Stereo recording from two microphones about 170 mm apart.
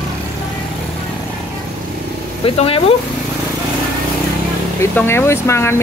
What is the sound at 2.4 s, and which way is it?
Speech, 35° left (ahead or behind).